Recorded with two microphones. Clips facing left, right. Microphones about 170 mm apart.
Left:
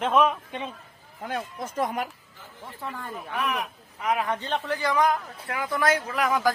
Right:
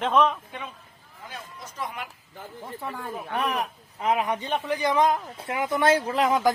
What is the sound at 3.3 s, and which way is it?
A man's voice, 35° right (ahead or behind).